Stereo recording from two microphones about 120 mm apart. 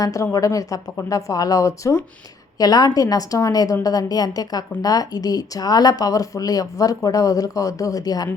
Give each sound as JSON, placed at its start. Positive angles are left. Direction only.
{"t": 0.0, "sound": "speech", "side_deg": 25}